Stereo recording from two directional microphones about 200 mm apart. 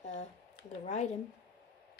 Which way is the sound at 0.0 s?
35° left (ahead or behind).